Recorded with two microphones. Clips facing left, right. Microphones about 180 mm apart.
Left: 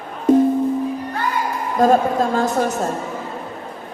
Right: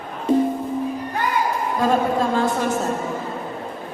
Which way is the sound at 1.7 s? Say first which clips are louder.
Left 5 dB; 45° left (ahead or behind).